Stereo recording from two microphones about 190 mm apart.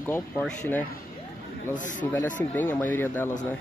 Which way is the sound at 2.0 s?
10° left (ahead or behind).